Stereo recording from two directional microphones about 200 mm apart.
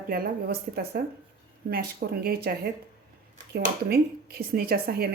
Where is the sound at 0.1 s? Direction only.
50° right (ahead or behind).